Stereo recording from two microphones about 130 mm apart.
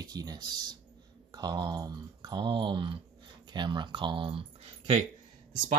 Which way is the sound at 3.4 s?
35° right (ahead or behind).